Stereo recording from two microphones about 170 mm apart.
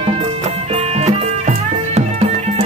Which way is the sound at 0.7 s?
40° right (ahead or behind).